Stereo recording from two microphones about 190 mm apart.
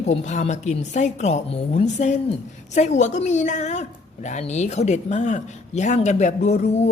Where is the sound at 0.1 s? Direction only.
35° left (ahead or behind).